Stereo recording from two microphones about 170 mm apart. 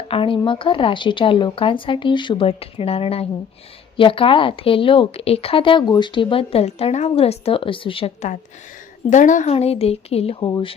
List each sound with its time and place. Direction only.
0.1 s speech: 30° left (ahead or behind)
9.0 s speech: 45° left (ahead or behind)